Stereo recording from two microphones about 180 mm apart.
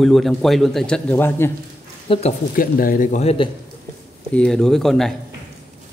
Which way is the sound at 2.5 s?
50° left (ahead or behind).